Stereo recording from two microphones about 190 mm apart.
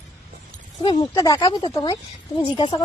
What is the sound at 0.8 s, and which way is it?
Speech, 25° left (ahead or behind).